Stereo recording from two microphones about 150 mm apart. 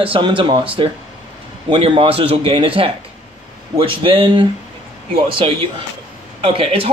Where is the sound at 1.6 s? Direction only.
35° right (ahead or behind).